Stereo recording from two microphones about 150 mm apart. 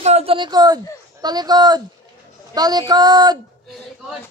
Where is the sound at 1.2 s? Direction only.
25° right (ahead or behind).